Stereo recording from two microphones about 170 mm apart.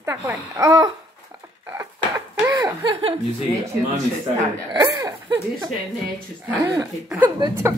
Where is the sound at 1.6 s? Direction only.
15° right (ahead or behind).